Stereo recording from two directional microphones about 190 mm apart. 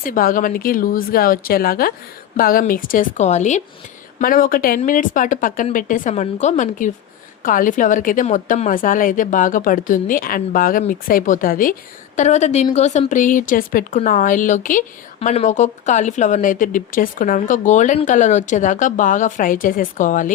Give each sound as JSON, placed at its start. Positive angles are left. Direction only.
{"t": 0.0, "sound": "speech", "side_deg": 45}
{"t": 4.2, "sound": "a woman's voice", "side_deg": 50}